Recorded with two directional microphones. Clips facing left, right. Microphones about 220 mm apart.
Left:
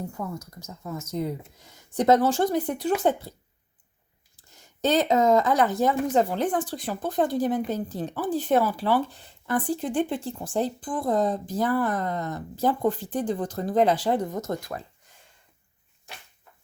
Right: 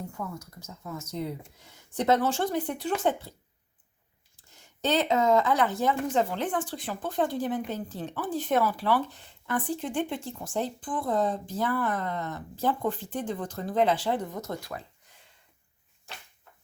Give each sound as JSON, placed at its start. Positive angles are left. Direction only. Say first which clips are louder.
{"t": 0.1, "sound": "speech", "louder": "left 3 dB", "side_deg": 40}
{"t": 4.5, "sound": "speech", "louder": "left 4 dB", "side_deg": 40}